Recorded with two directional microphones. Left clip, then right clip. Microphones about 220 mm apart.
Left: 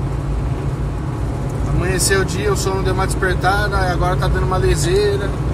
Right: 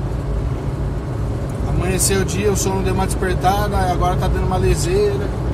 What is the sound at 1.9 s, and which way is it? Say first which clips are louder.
Speech: left 3 dB; 20° right (ahead or behind).